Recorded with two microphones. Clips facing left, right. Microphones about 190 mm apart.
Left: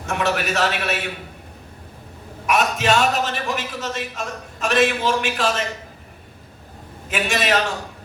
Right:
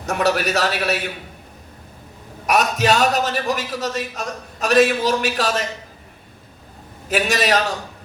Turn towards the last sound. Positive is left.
turn(degrees=-40)  # may be behind; listen again after turning